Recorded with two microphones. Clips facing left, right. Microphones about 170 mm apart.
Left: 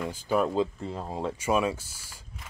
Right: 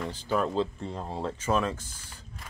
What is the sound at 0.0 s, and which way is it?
Speech, 10° left (ahead or behind).